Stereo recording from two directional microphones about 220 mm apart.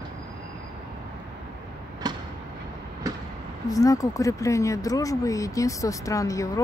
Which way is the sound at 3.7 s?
15° left (ahead or behind).